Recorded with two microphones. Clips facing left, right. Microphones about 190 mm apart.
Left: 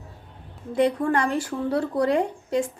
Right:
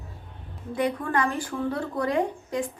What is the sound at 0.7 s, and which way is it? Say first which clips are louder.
A woman's voice: left 4 dB; 25° left (ahead or behind).